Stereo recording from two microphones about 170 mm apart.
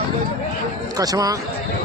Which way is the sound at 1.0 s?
20° right (ahead or behind).